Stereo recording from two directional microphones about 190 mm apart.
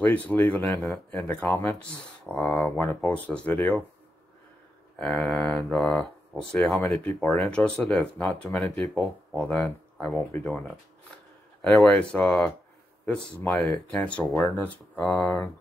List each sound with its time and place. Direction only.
0.0 s speech: 10° left (ahead or behind)
4.9 s speech: 5° left (ahead or behind)
6.8 s speech: 15° left (ahead or behind)
7.2 s speech: 5° left (ahead or behind)
11.6 s speech: centre (ahead or behind)